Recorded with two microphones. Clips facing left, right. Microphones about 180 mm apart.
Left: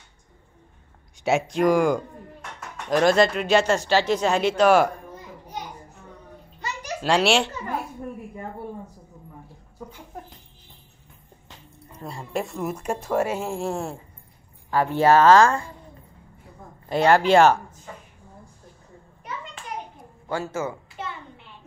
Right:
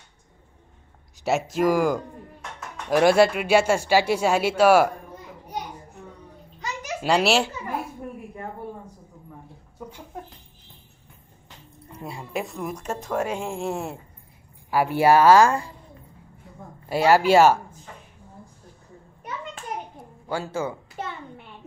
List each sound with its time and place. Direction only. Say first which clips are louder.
1.2 s speech: left 1 dB; centre (ahead or behind)
7.0 s speech: even; 5° right (ahead or behind)
12.0 s speech: left 1 dB; 5° right (ahead or behind)
16.9 s speech: even; 5° right (ahead or behind)
20.2 s speech: even; 10° right (ahead or behind)